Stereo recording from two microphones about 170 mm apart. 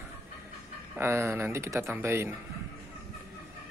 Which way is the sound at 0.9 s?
15° right (ahead or behind).